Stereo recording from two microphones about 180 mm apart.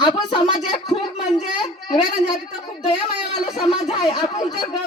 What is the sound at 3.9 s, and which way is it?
Speech, 25° left (ahead or behind).